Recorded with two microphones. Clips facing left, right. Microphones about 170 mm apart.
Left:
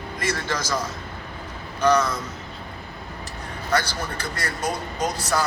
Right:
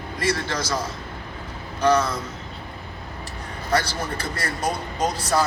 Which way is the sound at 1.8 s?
30° right (ahead or behind).